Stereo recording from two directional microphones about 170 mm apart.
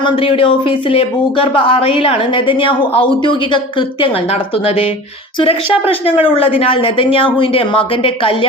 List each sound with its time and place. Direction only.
0.0 s a woman's voice: 30° left (ahead or behind)